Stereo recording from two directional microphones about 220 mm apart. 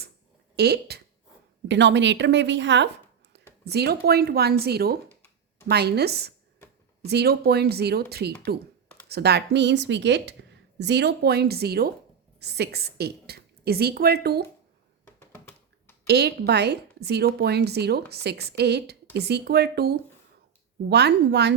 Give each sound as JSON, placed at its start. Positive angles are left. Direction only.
{"t": 0.5, "sound": "a woman's voice", "side_deg": -50}
{"t": 15.0, "sound": "a sound", "side_deg": 10}
{"t": 16.0, "sound": "a woman's voice", "side_deg": -50}